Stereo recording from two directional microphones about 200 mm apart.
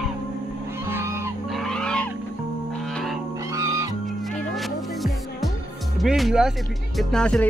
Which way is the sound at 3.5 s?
15° right (ahead or behind).